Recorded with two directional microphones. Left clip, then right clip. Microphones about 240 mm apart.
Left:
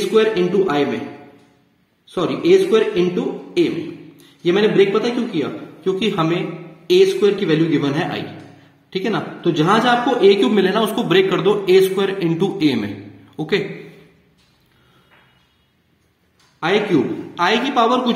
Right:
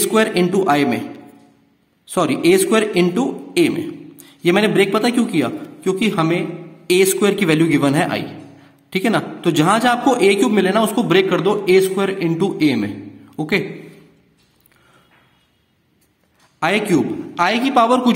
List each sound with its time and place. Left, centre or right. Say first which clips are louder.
0.0 s a man's voice: left 1 dB; right
2.0 s a man's voice: right 1 dB; right
16.5 s a man's voice: even; right